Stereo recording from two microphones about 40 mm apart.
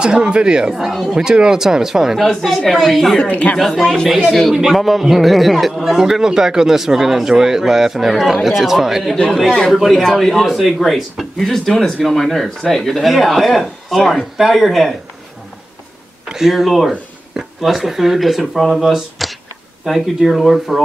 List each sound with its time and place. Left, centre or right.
0.0 s speech: right
0.7 s a man's voice: centre
1.1 s a man's voice: centre
2.1 s a man's voice: centre
3.3 s speech: left
3.5 s a man's voice: centre
16.3 s a man's voice: centre